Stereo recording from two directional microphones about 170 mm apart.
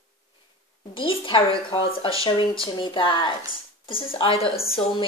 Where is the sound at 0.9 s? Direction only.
30° left (ahead or behind).